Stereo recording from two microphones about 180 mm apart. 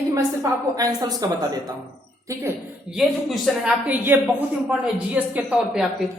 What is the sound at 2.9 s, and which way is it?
A woman's voice, centre (ahead or behind).